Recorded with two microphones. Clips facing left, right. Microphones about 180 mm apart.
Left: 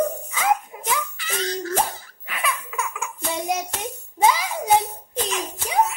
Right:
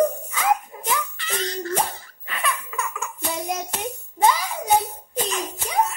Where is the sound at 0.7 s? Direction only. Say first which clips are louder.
Even; 10° left (ahead or behind).